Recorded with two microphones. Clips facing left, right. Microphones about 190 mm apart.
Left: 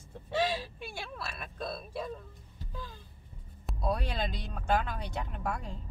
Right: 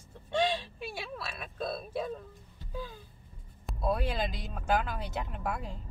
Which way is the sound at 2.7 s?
5° right (ahead or behind).